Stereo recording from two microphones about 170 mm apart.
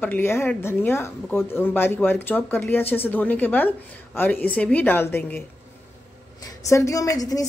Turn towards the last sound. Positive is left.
turn(degrees=20)  # may be behind; listen again after turning